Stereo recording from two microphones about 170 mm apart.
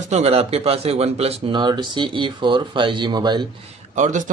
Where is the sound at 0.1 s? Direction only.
40° right (ahead or behind).